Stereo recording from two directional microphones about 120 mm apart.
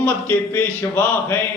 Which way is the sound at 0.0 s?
15° left (ahead or behind).